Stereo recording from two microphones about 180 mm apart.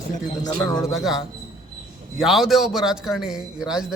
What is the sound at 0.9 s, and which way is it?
A man's voice, centre (ahead or behind).